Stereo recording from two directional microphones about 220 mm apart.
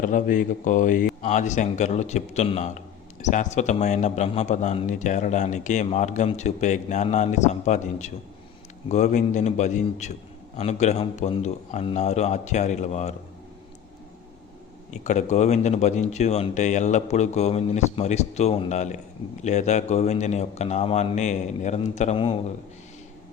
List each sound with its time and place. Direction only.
0.0 s speech: 35° left (ahead or behind)
14.8 s speech: 30° left (ahead or behind)